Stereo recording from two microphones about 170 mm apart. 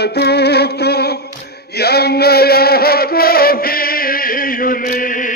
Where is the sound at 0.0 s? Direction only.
75° left (ahead or behind); by 5.3 s 55° left (ahead or behind).